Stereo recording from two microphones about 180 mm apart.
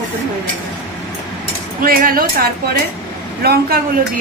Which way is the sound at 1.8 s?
50° right (ahead or behind).